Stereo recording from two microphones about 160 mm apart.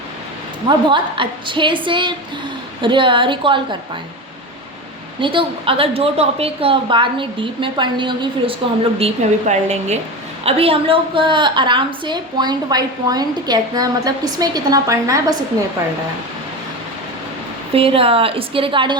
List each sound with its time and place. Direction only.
0.9 s a woman's voice: 30° right (ahead or behind)
5.2 s a woman's voice: 30° right (ahead or behind)
17.7 s a woman's voice: 35° right (ahead or behind)